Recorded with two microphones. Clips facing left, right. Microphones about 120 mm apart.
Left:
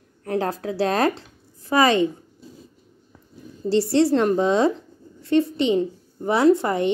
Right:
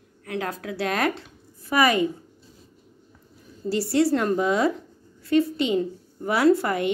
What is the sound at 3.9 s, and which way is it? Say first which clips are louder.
A woman's voice: left 2 dB; 25° left (ahead or behind).